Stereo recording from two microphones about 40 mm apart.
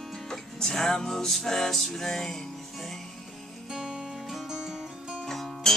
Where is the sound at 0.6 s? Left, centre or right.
Centre.